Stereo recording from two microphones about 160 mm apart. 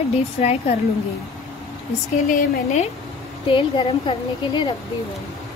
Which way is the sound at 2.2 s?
45° left (ahead or behind).